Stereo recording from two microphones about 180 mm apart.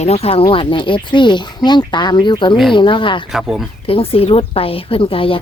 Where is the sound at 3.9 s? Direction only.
30° left (ahead or behind).